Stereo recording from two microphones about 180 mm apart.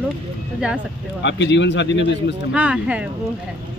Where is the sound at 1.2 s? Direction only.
80° left.